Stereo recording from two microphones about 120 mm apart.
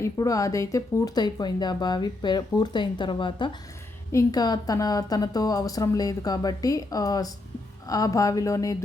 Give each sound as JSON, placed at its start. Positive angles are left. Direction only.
{"t": 0.0, "sound": "speech", "side_deg": 30}
{"t": 4.1, "sound": "speech", "side_deg": 30}